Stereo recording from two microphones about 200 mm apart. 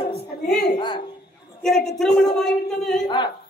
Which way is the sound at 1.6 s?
Centre (ahead or behind).